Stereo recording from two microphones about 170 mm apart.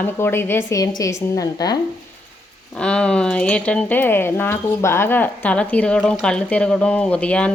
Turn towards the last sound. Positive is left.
turn(degrees=5)  # may be behind; listen again after turning